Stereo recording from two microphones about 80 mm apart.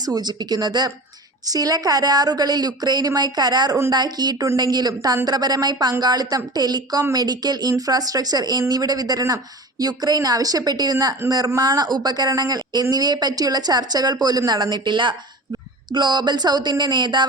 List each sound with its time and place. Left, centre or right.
0.0 s speech: right